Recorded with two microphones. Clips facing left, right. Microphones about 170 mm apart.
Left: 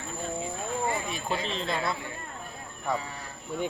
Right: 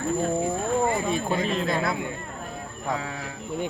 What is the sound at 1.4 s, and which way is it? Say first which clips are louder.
Speech: right 6 dB; 50° right (ahead or behind).